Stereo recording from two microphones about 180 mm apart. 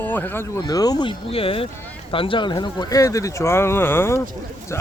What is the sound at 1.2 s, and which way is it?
A man's voice, 30° left (ahead or behind).